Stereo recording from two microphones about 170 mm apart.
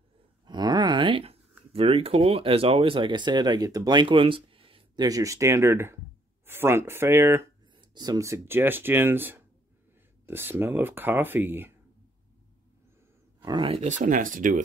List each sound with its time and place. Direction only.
0.5 s a sound: 25° right (ahead or behind)
1.7 s speech: 35° right (ahead or behind); by 7.4 s 15° right (ahead or behind)
7.7 s speech: 25° right (ahead or behind)
13.4 s speech: 25° right (ahead or behind); by 14.6 s 50° right (ahead or behind)